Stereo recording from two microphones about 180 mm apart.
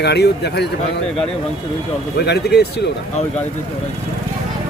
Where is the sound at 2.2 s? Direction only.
65° left (ahead or behind).